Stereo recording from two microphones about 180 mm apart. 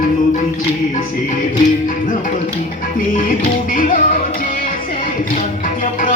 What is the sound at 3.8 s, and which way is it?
Music, 45° left (ahead or behind).